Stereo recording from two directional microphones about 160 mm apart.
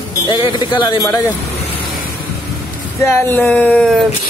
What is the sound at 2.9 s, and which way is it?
A man's voice, 15° left (ahead or behind).